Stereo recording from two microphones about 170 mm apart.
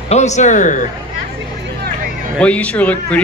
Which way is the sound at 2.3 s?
5° left (ahead or behind).